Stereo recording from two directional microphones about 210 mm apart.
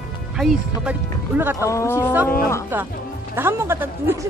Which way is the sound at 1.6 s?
10° left (ahead or behind).